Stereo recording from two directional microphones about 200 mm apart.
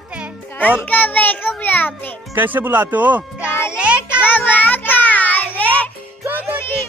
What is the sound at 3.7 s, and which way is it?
Music, 5° right (ahead or behind).